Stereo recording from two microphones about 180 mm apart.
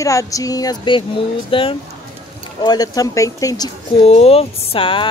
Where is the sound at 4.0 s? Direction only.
35° left (ahead or behind).